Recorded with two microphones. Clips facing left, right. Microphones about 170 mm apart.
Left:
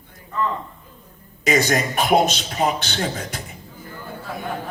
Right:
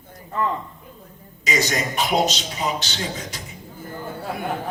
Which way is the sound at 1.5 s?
55° left (ahead or behind).